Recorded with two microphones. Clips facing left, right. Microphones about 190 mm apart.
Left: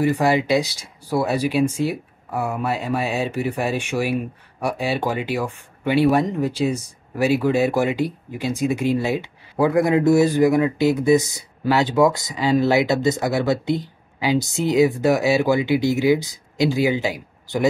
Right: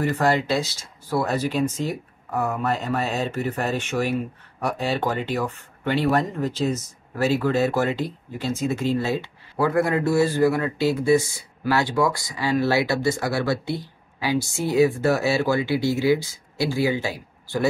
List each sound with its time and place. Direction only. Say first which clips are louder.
0.0 s speech: left 3 dB; 10° left (ahead or behind)